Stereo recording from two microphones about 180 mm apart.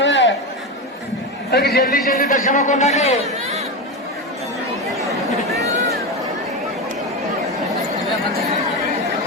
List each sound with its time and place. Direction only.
0.0 s chatter: 90° left
1.5 s a man's voice: 65° left (ahead or behind)
2.0 s a man's voice: 50° left (ahead or behind)
4.9 s chatter: centre (ahead or behind)